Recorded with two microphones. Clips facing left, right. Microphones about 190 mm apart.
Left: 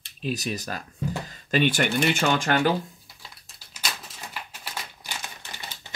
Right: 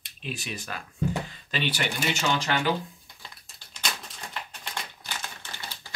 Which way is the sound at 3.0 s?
5° left (ahead or behind).